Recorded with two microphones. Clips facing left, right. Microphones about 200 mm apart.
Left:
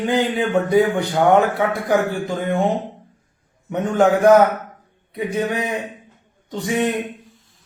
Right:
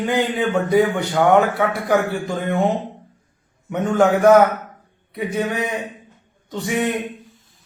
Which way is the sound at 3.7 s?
20° left (ahead or behind).